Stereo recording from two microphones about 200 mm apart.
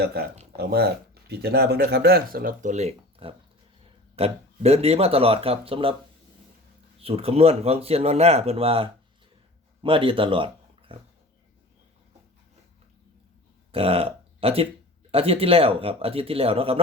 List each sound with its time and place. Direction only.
0.0 s speech: 50° right (ahead or behind); by 5.9 s 30° right (ahead or behind)
7.0 s speech: 30° right (ahead or behind)
13.7 s speech: 30° right (ahead or behind)